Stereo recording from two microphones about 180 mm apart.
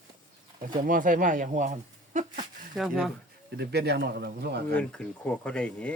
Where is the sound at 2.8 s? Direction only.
Centre (ahead or behind).